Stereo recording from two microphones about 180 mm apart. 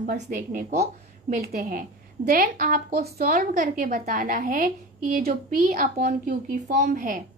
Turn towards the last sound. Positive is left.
turn(degrees=-50)  # may be behind; listen again after turning